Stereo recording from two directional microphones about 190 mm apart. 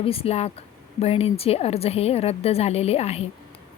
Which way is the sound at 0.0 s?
30° left (ahead or behind).